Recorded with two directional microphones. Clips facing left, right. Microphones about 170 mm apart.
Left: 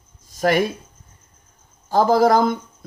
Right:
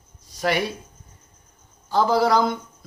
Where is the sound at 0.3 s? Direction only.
45° left (ahead or behind).